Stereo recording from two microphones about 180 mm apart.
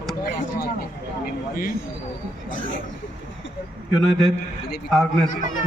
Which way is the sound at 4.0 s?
Centre (ahead or behind).